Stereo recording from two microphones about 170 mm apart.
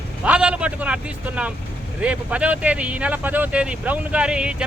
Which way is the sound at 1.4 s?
5° right (ahead or behind).